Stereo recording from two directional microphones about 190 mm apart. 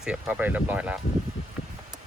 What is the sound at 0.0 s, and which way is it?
Speech, 5° right (ahead or behind).